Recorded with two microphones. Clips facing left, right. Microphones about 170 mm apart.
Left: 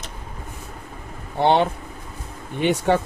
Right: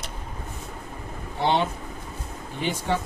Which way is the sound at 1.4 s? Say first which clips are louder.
Left 6 dB; 60° left (ahead or behind).